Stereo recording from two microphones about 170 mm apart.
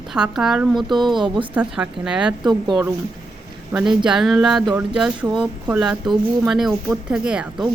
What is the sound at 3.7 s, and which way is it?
Speech, 5° right (ahead or behind).